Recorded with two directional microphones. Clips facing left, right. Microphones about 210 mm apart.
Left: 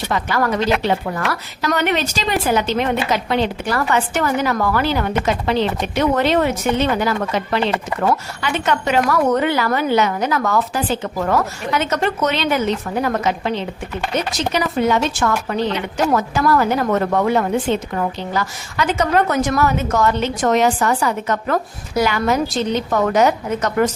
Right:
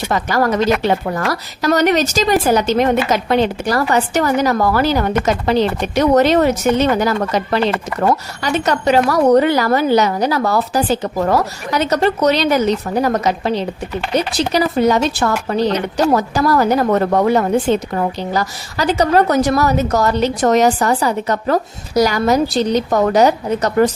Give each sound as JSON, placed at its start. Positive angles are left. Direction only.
{"t": 0.1, "sound": "a woman's voice", "side_deg": -40}